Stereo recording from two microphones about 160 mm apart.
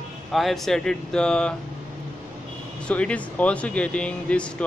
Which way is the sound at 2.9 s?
10° left (ahead or behind).